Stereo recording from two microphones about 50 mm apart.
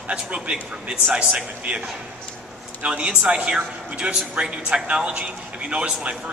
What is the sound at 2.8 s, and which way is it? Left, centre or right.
A man's voice, right.